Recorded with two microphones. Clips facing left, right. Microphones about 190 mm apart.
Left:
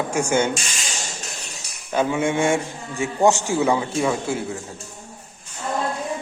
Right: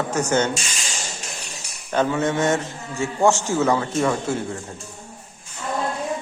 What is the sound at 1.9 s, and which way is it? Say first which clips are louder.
A man's voice: even; 10° left (ahead or behind).